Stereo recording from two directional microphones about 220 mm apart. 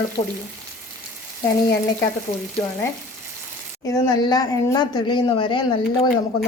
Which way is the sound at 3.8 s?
15° left (ahead or behind).